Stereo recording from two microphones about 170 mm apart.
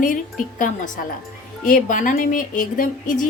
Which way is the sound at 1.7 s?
50° left (ahead or behind).